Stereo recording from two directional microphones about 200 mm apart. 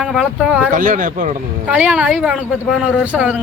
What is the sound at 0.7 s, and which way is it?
Speech, 40° right (ahead or behind).